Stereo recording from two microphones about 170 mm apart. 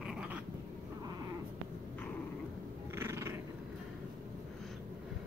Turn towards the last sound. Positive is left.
turn(degrees=-15)  # may be behind; listen again after turning